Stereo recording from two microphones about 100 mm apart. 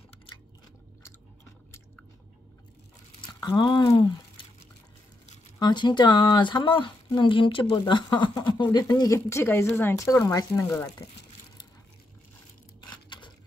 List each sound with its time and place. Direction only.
3.3 s speech: 45° left (ahead or behind)
3.8 s speech: 35° left (ahead or behind)
5.6 s speech: 45° left (ahead or behind)
8.9 s speech: 35° left (ahead or behind)